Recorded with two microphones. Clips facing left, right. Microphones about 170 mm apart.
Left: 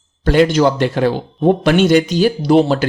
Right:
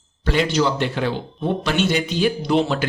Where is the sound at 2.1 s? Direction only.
40° left (ahead or behind).